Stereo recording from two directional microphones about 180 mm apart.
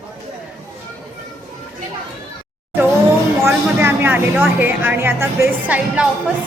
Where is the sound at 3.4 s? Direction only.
15° right (ahead or behind).